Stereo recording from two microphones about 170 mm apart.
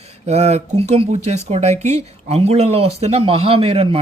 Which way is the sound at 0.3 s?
40° right (ahead or behind).